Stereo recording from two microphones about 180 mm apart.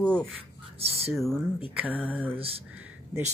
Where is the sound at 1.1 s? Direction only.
Centre (ahead or behind).